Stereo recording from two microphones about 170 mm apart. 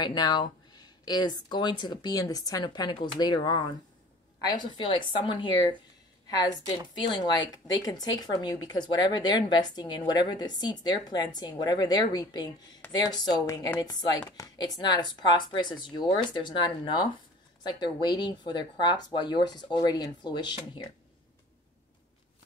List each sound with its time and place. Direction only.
0.0 s a woman's voice: 25° left (ahead or behind)